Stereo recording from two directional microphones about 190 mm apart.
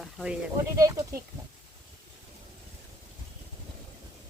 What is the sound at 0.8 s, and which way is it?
Speech, 15° right (ahead or behind).